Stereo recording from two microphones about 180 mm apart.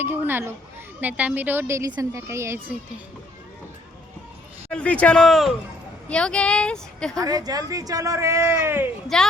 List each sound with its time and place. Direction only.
0.0 s a woman's voice: 10° right (ahead or behind)
4.7 s a woman's voice: 5° left (ahead or behind)
7.2 s a woman's voice: 20° right (ahead or behind)
9.1 s a woman's voice: 5° left (ahead or behind)